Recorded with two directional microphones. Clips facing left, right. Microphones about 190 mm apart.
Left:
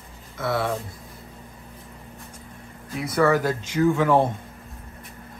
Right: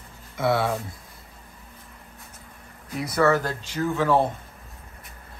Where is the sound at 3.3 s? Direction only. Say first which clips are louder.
Left 2 dB; 15° left (ahead or behind).